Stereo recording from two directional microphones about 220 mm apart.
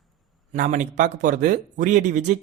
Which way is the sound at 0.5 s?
35° right (ahead or behind).